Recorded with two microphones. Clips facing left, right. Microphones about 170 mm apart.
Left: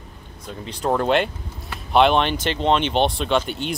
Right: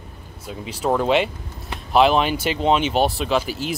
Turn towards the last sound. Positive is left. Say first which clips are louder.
# even
turn(degrees=0)  # may be behind; listen again after turning